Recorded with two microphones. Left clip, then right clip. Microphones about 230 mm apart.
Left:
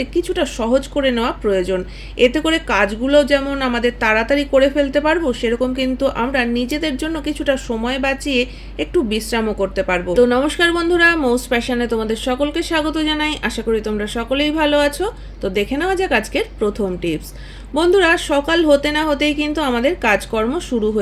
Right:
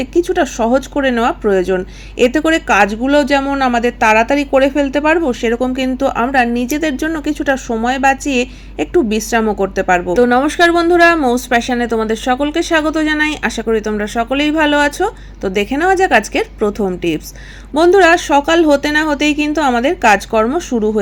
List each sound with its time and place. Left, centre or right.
0.1 s speech: centre